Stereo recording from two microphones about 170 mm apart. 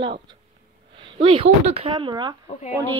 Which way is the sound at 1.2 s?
35° right (ahead or behind).